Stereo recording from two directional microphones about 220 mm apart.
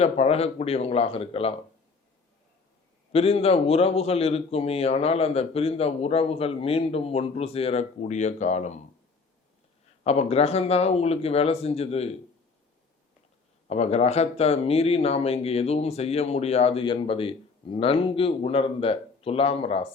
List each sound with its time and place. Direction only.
0.0 s speech: 30° left (ahead or behind)
3.1 s speech: 25° left (ahead or behind)
10.0 s speech: 30° left (ahead or behind)
13.7 s speech: 30° left (ahead or behind)